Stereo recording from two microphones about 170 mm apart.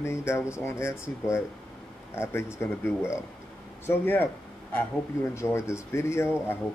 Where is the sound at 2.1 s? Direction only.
15° left (ahead or behind).